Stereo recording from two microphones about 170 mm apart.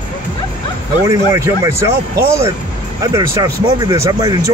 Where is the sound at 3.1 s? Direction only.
20° right (ahead or behind).